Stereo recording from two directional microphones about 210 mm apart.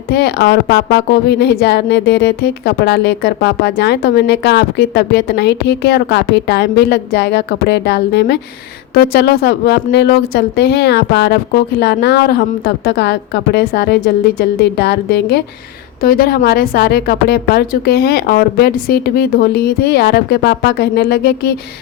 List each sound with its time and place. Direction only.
0.1 s a woman's voice: 50° left (ahead or behind)